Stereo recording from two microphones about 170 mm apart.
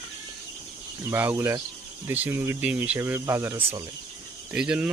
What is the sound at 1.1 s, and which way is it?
Speech, 10° right (ahead or behind).